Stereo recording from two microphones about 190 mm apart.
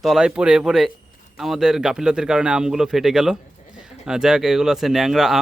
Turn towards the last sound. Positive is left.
turn(degrees=0)  # may be behind; listen again after turning